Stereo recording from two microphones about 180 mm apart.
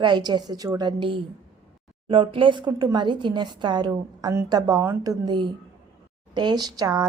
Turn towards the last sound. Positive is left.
turn(degrees=-20)  # may be behind; listen again after turning